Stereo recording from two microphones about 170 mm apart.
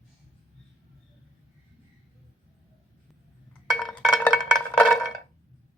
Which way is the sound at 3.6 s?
Centre (ahead or behind).